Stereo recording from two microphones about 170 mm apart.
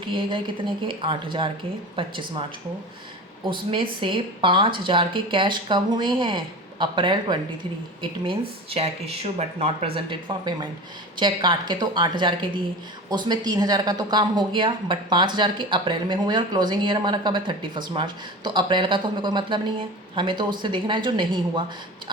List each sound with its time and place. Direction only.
0.1 s speech: 30° right (ahead or behind)
3.5 s speech: 30° right (ahead or behind)